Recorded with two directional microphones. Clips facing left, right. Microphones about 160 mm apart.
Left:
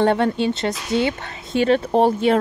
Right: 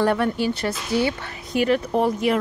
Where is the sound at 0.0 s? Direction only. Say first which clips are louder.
Left 3 dB; 25° left (ahead or behind).